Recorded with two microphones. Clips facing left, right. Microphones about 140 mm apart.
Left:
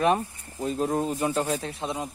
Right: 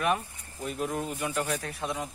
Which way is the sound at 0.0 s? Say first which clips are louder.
Left 5 dB; 30° left (ahead or behind).